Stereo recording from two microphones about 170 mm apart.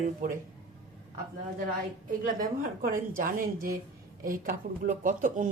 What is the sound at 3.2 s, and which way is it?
A woman's voice, 60° right (ahead or behind).